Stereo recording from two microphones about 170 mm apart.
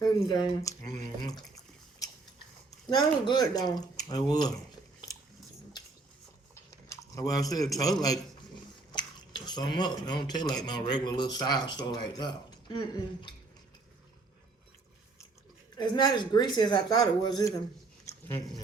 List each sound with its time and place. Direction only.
0.0 s speech: 25° left (ahead or behind)
2.0 s biting: 20° left (ahead or behind)
2.9 s speech: 25° left (ahead or behind)
6.5 s a sound: 15° left (ahead or behind)
8.9 s speech: 25° left (ahead or behind)
15.8 s speech: 25° left (ahead or behind)
18.0 s a sound: 15° left (ahead or behind)